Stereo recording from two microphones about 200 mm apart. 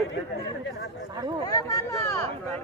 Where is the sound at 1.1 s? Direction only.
20° right (ahead or behind).